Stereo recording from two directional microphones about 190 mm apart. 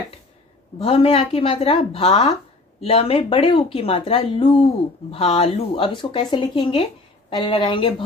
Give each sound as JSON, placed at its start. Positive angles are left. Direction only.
{"t": 0.7, "sound": "speech", "side_deg": 30}